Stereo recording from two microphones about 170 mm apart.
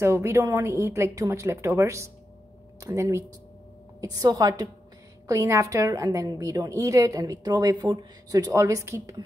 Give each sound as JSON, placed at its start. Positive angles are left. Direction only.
{"t": 0.0, "sound": "a woman's voice", "side_deg": -15}